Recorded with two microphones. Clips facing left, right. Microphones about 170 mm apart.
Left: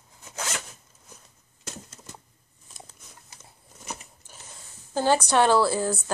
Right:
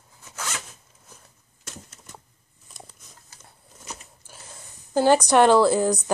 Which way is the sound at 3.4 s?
5° left (ahead or behind).